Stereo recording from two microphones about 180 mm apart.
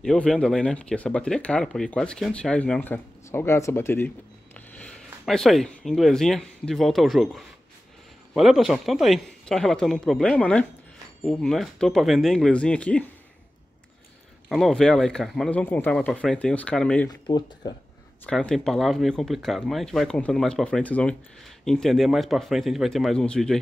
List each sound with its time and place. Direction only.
0.0 s speech: 5° left (ahead or behind)
14.5 s speech: centre (ahead or behind)
17.1 s speech: 25° left (ahead or behind)
18.2 s speech: 5° left (ahead or behind)